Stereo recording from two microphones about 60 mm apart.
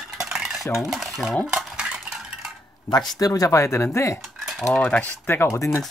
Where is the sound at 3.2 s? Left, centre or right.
Left.